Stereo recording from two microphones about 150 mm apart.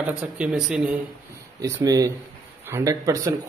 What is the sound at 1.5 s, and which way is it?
Speech, 25° right (ahead or behind).